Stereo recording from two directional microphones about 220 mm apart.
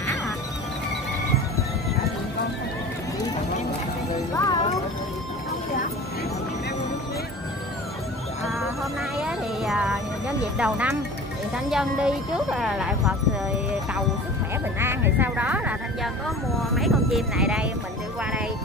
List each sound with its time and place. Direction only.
4.5 s music: 20° left (ahead or behind)
9.2 s music: 5° right (ahead or behind)
10.6 s speech: 5° right (ahead or behind)
14.8 s speech: 10° right (ahead or behind)